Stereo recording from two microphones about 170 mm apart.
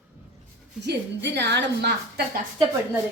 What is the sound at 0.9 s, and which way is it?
A woman's voice, 85° right.